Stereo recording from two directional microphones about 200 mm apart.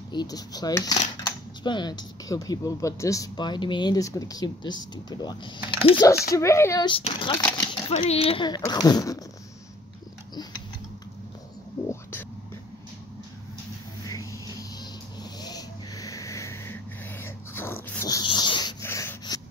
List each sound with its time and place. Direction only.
0.1 s speech: 20° left (ahead or behind)
11.9 s whispering: 10° left (ahead or behind)
15.4 s music: 20° left (ahead or behind)
17.2 s dog: 10° left (ahead or behind)